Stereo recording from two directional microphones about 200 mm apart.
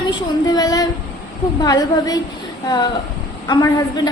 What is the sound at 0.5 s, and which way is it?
A woman's voice, 20° left (ahead or behind).